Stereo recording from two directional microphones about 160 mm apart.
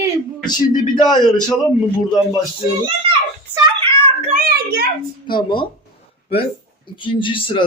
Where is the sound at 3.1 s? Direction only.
30° right (ahead or behind).